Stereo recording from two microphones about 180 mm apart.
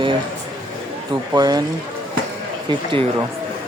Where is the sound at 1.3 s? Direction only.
20° right (ahead or behind).